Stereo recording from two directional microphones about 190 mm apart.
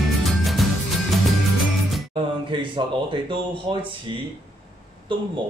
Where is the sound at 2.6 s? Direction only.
25° right (ahead or behind).